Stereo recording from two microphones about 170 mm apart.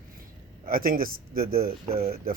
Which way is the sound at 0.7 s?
55° right (ahead or behind).